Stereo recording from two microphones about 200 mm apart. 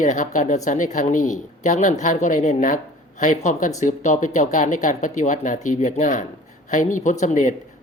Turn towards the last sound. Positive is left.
turn(degrees=40)  # may be behind; listen again after turning